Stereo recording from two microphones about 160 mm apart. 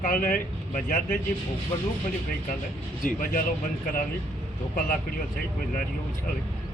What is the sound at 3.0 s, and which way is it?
Speech, 60° left (ahead or behind).